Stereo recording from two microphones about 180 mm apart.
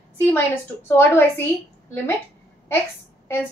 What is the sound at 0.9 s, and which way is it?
Speech, 15° left (ahead or behind).